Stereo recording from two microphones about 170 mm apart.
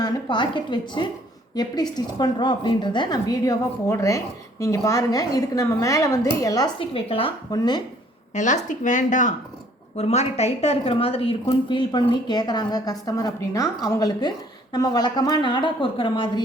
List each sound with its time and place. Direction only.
0.0 s a woman's voice: 25° left (ahead or behind)
8.4 s a woman's voice: 45° left (ahead or behind); by 16.4 s 30° left (ahead or behind)